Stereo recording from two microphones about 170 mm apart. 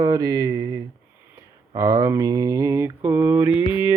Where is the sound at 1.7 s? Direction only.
20° right (ahead or behind).